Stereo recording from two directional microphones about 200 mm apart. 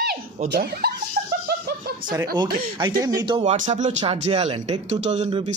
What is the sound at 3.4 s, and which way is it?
Speech, 35° right (ahead or behind).